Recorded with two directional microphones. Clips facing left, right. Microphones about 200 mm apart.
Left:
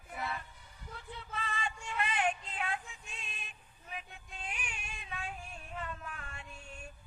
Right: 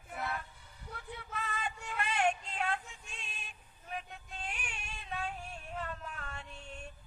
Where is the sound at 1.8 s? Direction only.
50° right (ahead or behind).